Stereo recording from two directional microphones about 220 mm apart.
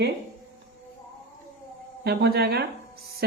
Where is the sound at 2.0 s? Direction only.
45° right (ahead or behind).